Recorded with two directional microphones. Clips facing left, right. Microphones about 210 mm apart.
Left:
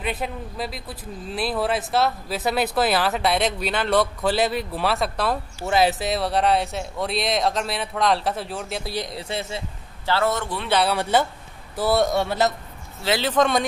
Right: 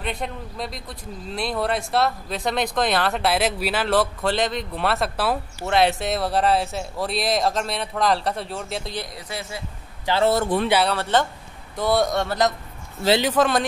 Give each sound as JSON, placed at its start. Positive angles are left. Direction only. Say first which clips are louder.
{"t": 0.0, "sound": "speech", "louder": "left 1 dB", "side_deg": 5}
{"t": 9.1, "sound": "speech", "louder": "left 4 dB", "side_deg": 25}
{"t": 10.2, "sound": "speech", "louder": "right 6 dB", "side_deg": -35}
{"t": 10.9, "sound": "speech", "louder": "left 1 dB", "side_deg": 10}
{"t": 13.2, "sound": "speech", "louder": "even", "side_deg": -5}